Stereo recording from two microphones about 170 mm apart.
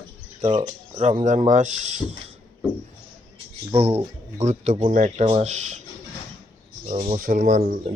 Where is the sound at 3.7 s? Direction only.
35° right (ahead or behind).